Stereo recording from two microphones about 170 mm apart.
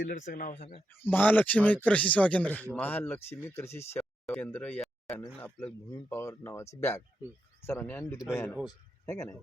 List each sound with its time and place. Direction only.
0.1 s speech: 50° left (ahead or behind)
0.9 s speech: 10° left (ahead or behind)